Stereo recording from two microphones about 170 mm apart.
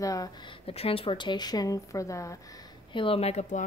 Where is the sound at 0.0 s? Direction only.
20° left (ahead or behind).